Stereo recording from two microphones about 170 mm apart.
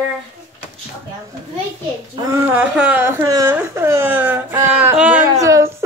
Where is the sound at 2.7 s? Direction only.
10° right (ahead or behind).